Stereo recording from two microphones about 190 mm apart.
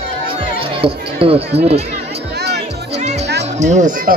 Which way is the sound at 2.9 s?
35° right (ahead or behind).